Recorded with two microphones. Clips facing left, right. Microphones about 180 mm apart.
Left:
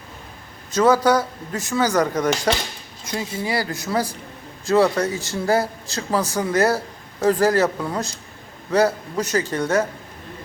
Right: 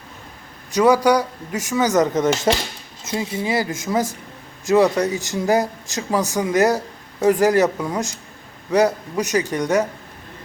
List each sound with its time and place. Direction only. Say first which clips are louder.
0.7 s speech: right 1 dB; 15° right (ahead or behind)